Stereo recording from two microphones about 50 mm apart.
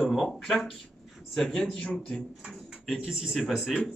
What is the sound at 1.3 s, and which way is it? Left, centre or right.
Speech, centre.